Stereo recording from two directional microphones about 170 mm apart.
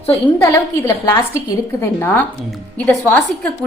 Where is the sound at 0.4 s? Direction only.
20° left (ahead or behind).